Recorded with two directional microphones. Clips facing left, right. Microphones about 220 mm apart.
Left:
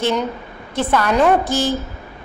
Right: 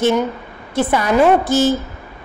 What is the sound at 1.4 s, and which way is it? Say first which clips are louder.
Speech: right 5 dB; 15° left (ahead or behind).